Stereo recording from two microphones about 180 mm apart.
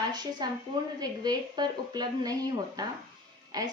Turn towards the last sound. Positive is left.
turn(degrees=-20)  # may be behind; listen again after turning